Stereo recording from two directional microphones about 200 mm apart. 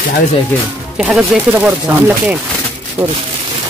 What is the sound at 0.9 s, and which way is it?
Speech, 5° right (ahead or behind).